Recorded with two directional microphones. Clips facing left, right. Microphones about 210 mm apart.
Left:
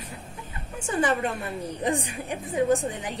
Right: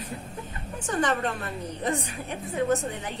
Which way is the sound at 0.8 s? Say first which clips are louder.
Left 1 dB; 10° left (ahead or behind).